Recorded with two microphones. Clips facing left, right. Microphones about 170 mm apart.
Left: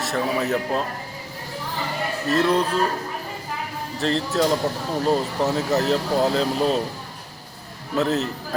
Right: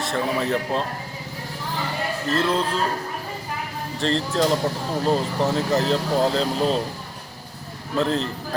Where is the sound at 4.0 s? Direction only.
5° left (ahead or behind).